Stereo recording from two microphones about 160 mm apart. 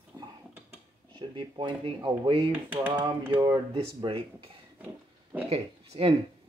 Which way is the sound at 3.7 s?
35° right (ahead or behind).